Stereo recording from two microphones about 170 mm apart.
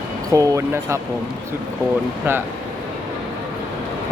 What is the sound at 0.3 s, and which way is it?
Speech, 20° right (ahead or behind).